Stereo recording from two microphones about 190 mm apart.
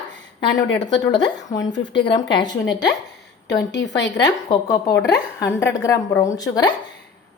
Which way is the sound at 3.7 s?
65° left (ahead or behind).